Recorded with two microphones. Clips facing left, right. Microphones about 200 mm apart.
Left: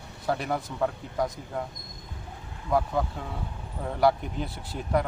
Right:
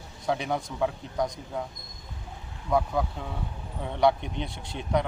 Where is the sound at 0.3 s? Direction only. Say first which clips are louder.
Even; centre (ahead or behind).